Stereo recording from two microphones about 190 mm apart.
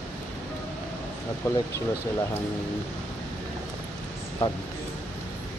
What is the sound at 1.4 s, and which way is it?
Speech, 15° left (ahead or behind).